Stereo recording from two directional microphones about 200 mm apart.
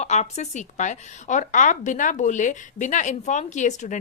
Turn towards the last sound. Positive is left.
turn(degrees=35)  # may be behind; listen again after turning